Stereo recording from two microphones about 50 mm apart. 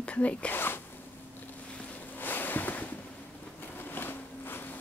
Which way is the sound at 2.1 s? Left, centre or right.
Left.